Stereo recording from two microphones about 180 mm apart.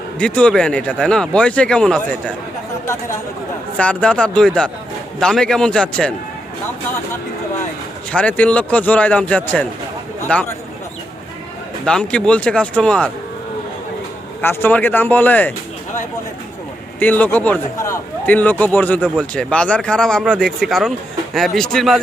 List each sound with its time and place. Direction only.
0.2 s speech: 5° left (ahead or behind)
2.8 s a man's voice: 15° left (ahead or behind)
8.1 s a man's voice: 5° left (ahead or behind)
11.9 s speech: 5° left (ahead or behind)
14.4 s a man's voice: 10° left (ahead or behind)
17.0 s a man's voice: 10° left (ahead or behind)